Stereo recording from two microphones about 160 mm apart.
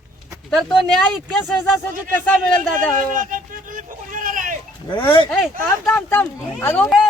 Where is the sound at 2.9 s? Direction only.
55° right (ahead or behind).